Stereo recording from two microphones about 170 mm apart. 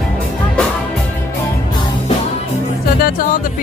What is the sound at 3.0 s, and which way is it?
Music, 60° left (ahead or behind).